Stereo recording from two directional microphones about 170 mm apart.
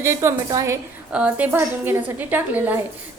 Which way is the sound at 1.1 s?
5° right (ahead or behind).